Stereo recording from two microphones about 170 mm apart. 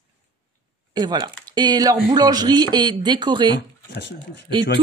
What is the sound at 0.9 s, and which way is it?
Speech, 25° right (ahead or behind).